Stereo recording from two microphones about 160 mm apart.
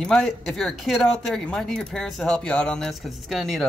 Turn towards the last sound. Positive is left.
turn(degrees=0)  # may be behind; listen again after turning